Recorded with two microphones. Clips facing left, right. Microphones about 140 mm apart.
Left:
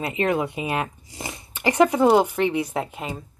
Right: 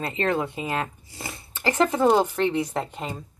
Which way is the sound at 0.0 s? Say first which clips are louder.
Left 2 dB; 15° left (ahead or behind).